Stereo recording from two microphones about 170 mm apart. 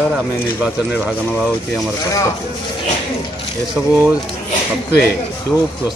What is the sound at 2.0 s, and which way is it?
Speech, 20° left (ahead or behind).